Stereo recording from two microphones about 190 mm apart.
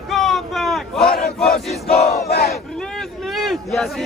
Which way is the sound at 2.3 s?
55° left (ahead or behind).